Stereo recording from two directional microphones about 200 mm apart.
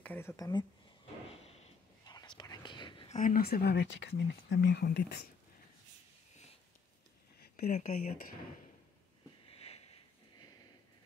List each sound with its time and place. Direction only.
0.0 s speech: 10° left (ahead or behind)
1.3 s whispering: 30° left (ahead or behind)
3.2 s speech: 45° left (ahead or behind)
7.3 s a sound: 50° left (ahead or behind)
7.7 s speech: 40° left (ahead or behind)
9.5 s sniff: 30° left (ahead or behind)